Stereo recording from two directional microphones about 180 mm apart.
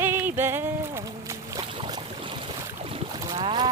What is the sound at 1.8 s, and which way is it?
Boat, 25° right (ahead or behind).